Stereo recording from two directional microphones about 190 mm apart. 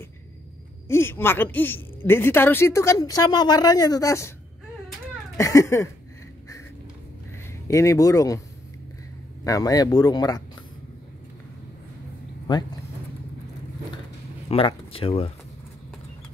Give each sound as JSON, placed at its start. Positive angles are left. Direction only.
{"t": 0.8, "sound": "a woman's voice", "side_deg": 15}
{"t": 5.4, "sound": "a woman's voice", "side_deg": 15}
{"t": 7.6, "sound": "a woman's voice", "side_deg": 15}
{"t": 9.4, "sound": "speech", "side_deg": 20}
{"t": 14.5, "sound": "speech", "side_deg": 30}